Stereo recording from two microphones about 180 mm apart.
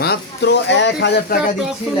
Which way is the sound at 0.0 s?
70° left (ahead or behind).